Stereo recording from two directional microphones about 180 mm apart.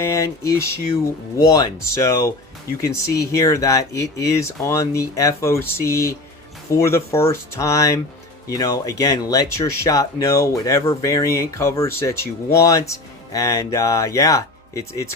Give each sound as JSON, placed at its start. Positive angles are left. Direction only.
{"t": 0.0, "sound": "speech", "side_deg": 15}